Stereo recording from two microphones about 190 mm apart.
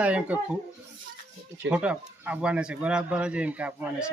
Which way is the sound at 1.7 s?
5° right (ahead or behind).